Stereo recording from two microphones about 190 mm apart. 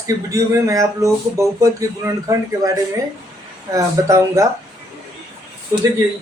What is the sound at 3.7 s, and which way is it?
Speech, 15° right (ahead or behind).